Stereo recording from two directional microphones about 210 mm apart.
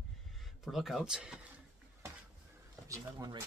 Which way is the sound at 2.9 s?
15° right (ahead or behind).